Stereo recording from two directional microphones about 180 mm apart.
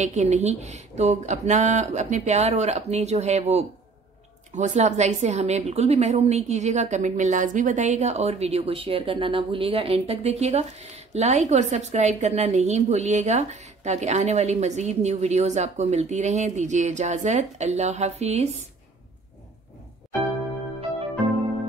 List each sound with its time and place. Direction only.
0.0 s a woman's voice: 40° right (ahead or behind)